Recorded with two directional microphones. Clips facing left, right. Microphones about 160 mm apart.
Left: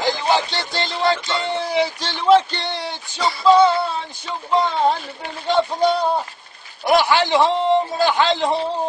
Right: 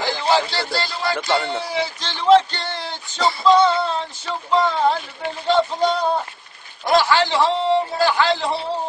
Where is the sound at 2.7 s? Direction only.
15° left (ahead or behind).